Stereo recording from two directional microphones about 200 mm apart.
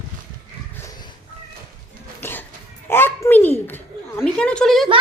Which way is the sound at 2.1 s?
10° left (ahead or behind).